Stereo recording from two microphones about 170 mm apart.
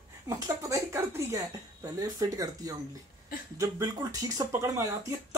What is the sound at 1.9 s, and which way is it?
Speech, 20° right (ahead or behind).